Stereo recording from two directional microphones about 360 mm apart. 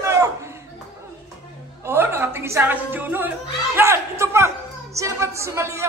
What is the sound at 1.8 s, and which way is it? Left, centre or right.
Speech, centre.